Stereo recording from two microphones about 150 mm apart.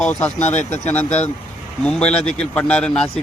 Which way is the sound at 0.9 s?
10° left (ahead or behind).